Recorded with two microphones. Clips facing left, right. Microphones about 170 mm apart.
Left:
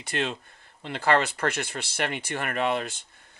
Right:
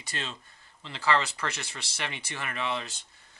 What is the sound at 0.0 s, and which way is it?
Speech, 55° left (ahead or behind).